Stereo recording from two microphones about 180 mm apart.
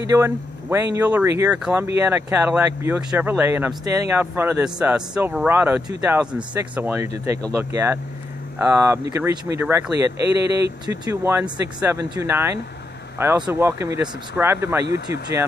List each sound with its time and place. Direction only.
0.0 s speech: 15° right (ahead or behind)